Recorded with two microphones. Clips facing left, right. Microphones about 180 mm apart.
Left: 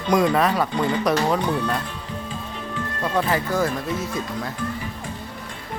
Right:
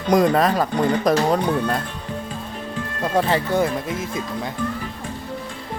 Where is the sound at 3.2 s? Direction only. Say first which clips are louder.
Right 3 dB; 30° right (ahead or behind).